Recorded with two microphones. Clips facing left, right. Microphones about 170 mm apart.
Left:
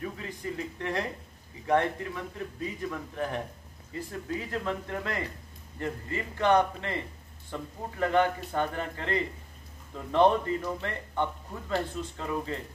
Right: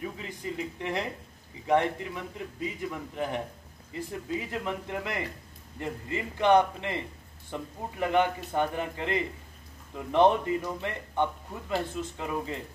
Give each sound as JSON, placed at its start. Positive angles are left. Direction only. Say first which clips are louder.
{"t": 0.0, "sound": "a man's voice", "louder": "even", "side_deg": -15}